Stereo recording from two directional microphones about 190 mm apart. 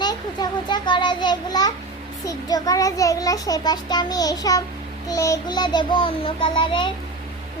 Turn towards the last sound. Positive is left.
turn(degrees=25)  # may be behind; listen again after turning